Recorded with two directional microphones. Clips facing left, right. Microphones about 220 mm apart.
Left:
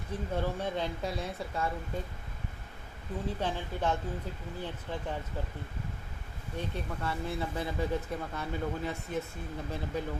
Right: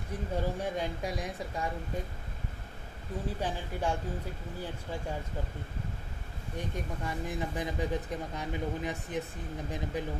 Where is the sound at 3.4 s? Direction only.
10° right (ahead or behind).